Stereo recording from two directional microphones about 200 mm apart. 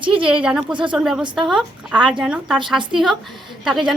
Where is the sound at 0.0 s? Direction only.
25° right (ahead or behind).